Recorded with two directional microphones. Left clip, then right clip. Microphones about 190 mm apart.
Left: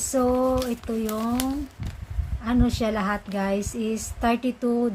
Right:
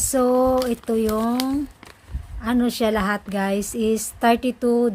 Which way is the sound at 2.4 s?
50° right (ahead or behind).